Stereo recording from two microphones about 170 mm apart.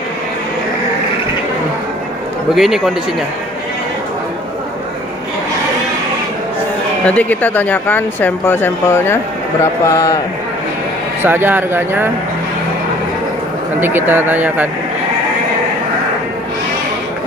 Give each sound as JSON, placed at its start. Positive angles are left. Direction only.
{"t": 2.5, "sound": "speech", "side_deg": 0}
{"t": 7.1, "sound": "a man's voice", "side_deg": 10}
{"t": 11.2, "sound": "speech", "side_deg": -10}
{"t": 13.7, "sound": "speech", "side_deg": -10}